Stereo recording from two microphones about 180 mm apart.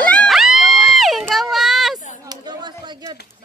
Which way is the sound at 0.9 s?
Centre (ahead or behind).